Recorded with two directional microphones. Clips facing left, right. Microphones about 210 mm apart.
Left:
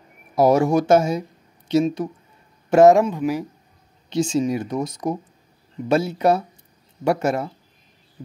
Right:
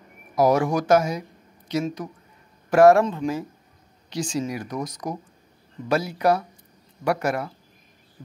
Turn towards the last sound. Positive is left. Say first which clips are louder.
# left 3 dB
turn(degrees=25)  # may be behind; listen again after turning